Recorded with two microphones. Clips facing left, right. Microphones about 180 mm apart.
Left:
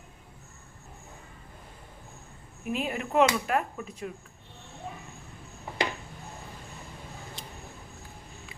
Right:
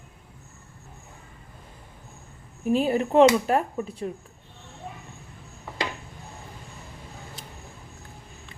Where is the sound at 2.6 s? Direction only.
35° right (ahead or behind).